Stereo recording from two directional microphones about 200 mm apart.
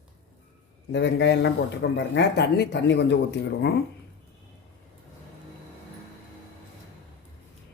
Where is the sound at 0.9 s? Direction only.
60° left (ahead or behind).